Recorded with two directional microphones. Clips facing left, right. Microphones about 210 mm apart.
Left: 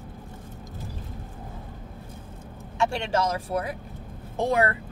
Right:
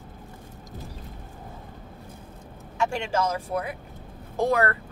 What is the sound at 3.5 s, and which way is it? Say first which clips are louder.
Speech: left 1 dB; 40° left (ahead or behind).